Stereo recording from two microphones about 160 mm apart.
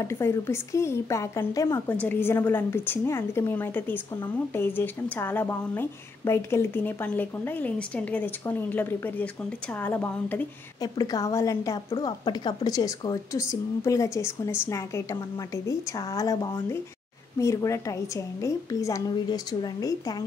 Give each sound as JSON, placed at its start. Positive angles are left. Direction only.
{"t": 0.0, "sound": "a woman's voice", "side_deg": 15}
{"t": 10.8, "sound": "a woman's voice", "side_deg": 25}